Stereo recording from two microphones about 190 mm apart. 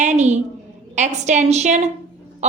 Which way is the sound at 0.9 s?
40° right (ahead or behind).